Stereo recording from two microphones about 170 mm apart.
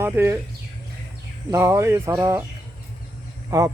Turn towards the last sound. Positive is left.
turn(degrees=-20)  # may be behind; listen again after turning